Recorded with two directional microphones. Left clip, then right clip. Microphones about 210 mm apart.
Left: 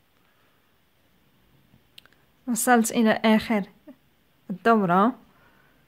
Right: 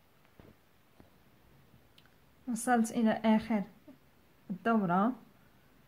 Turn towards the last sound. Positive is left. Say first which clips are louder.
# left 10 dB
turn(degrees=45)  # may be behind; listen again after turning